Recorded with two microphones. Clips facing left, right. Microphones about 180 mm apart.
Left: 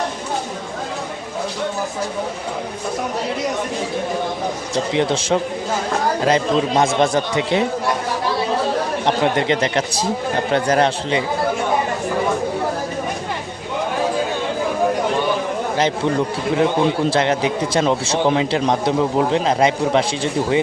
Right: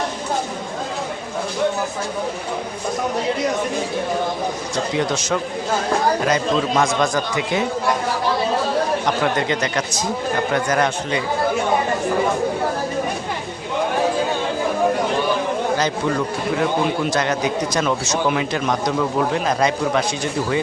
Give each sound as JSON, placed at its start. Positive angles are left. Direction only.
{"t": 4.9, "sound": "a man's voice", "side_deg": 30}
{"t": 9.0, "sound": "a man's voice", "side_deg": 25}
{"t": 16.6, "sound": "a man's voice", "side_deg": 30}